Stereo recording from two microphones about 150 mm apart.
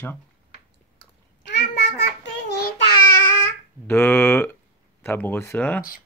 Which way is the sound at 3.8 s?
15° left (ahead or behind).